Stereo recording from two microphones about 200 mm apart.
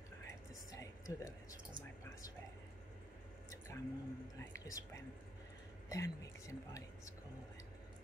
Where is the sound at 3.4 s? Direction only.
15° left (ahead or behind).